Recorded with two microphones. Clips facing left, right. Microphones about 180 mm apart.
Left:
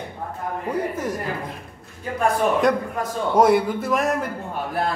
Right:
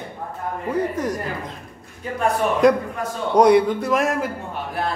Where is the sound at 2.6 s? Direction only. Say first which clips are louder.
Right 4 dB; centre (ahead or behind).